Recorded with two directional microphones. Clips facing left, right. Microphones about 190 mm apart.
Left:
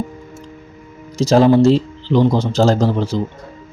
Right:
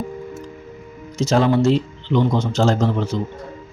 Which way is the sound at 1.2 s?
35° left (ahead or behind).